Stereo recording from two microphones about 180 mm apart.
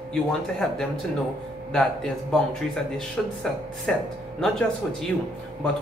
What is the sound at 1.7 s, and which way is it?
Speech, 5° left (ahead or behind).